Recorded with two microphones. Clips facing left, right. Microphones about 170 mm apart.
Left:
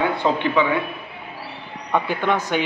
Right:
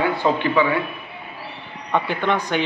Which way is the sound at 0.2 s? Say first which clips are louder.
Right 1 dB; 15° left (ahead or behind).